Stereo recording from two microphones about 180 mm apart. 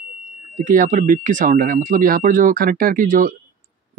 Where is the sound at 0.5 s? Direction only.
45° right (ahead or behind).